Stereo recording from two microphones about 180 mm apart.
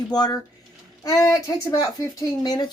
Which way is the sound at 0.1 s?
20° left (ahead or behind).